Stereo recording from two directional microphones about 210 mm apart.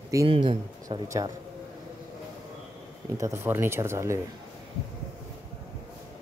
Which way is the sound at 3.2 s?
10° right (ahead or behind).